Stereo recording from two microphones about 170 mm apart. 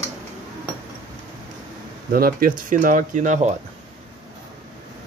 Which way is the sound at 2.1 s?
60° right (ahead or behind).